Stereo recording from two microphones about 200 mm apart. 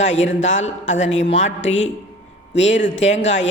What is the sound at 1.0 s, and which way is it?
Speech, 35° left (ahead or behind).